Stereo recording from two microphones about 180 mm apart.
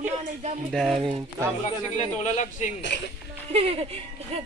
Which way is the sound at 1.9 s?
40° left (ahead or behind).